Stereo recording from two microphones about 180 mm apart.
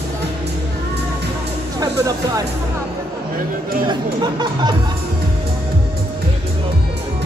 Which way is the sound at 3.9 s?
25° right (ahead or behind).